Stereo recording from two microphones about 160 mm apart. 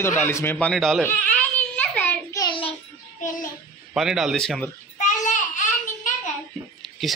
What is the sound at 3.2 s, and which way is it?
Child singing, 55° left (ahead or behind).